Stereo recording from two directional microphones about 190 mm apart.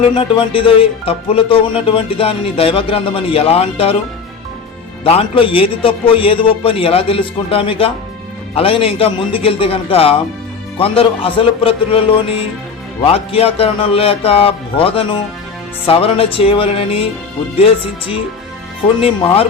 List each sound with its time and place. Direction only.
0.1 s speech: 25° left (ahead or behind)
5.0 s speech: 30° left (ahead or behind)